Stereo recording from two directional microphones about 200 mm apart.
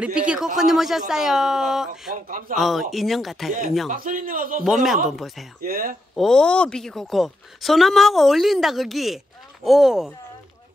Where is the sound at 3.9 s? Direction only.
40° right (ahead or behind).